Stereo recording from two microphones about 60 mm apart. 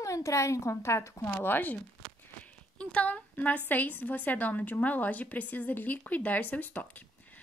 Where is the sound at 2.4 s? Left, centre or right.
Left.